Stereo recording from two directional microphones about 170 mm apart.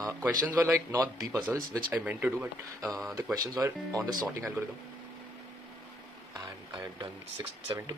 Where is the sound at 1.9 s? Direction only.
10° right (ahead or behind).